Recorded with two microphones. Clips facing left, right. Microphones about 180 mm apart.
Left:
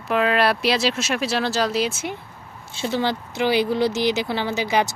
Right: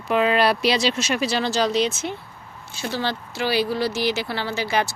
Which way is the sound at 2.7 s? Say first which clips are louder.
Left 3 dB; 25° left (ahead or behind).